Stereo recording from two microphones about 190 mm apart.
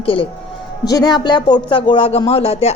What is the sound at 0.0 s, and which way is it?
Speech, 30° left (ahead or behind).